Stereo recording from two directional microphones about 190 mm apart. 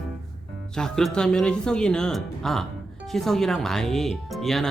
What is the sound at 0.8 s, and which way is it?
Speech, 5° left (ahead or behind).